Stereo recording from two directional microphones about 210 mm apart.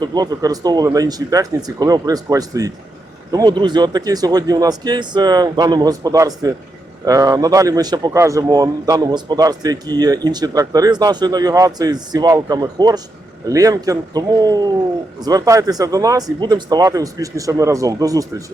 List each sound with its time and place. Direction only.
0.0 s a man's voice: 20° right (ahead or behind)